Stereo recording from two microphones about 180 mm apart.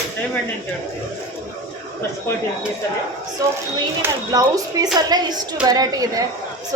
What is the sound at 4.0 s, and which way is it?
Speech, 20° right (ahead or behind).